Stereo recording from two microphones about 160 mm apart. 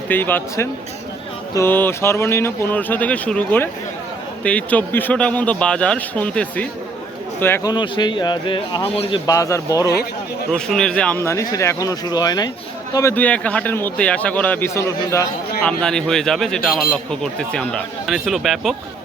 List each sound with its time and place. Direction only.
0.1 s a man's voice: 10° left (ahead or behind)
7.7 s speech: 30° left (ahead or behind)
10.5 s a man's voice: 5° left (ahead or behind)
15.6 s speech: 5° left (ahead or behind)